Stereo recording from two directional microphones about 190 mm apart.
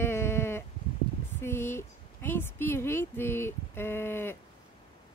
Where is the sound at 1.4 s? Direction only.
10° left (ahead or behind).